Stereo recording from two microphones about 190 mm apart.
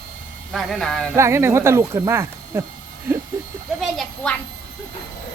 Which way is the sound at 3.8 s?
5° left (ahead or behind).